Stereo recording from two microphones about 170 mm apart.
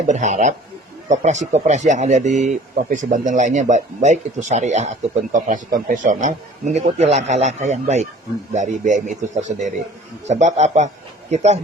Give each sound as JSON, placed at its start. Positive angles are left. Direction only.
{"t": 0.1, "sound": "speech", "side_deg": -45}